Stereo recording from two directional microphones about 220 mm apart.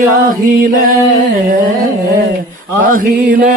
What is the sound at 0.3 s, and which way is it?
Music, 40° right (ahead or behind).